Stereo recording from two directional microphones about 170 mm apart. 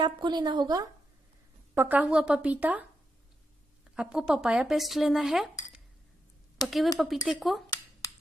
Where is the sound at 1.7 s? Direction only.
10° right (ahead or behind).